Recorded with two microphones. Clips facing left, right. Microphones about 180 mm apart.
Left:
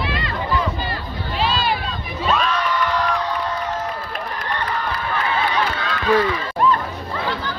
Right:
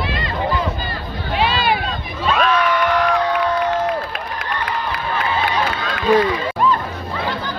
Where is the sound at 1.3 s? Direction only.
60° right (ahead or behind).